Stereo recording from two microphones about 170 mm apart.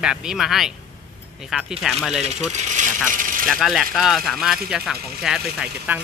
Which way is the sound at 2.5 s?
45° right (ahead or behind).